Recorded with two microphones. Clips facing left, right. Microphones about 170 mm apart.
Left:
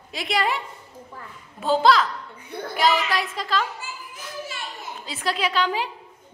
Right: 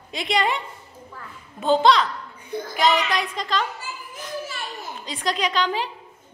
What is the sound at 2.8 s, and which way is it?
Speech, 5° left (ahead or behind).